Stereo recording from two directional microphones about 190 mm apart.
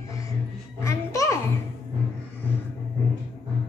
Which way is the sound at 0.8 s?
15° left (ahead or behind).